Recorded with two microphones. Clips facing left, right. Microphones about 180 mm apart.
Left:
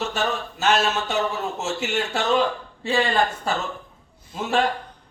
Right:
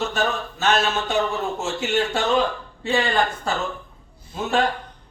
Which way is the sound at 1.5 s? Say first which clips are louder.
Right 1 dB; 5° left (ahead or behind).